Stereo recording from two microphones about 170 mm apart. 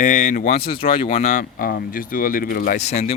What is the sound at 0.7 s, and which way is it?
Speech, 35° left (ahead or behind).